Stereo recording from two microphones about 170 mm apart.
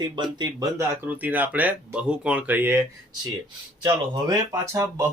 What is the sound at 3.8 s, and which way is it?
Speech, 20° right (ahead or behind).